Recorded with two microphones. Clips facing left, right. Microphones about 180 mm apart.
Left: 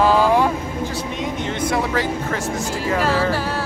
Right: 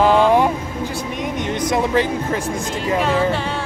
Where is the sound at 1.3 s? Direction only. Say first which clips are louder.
Right 3 dB; 15° right (ahead or behind).